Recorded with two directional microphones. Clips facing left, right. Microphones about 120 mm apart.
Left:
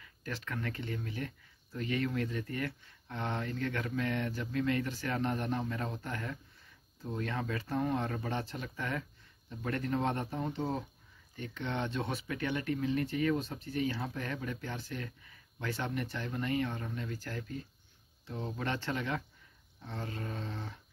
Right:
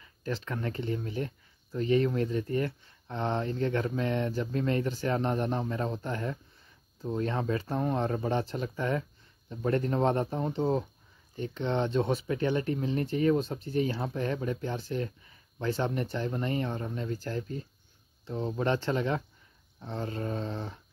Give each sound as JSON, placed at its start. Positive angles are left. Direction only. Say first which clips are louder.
{"t": 0.0, "sound": "speech", "louder": "right 7 dB", "side_deg": -30}